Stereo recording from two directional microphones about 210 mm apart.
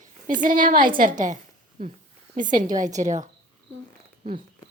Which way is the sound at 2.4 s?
40° right (ahead or behind).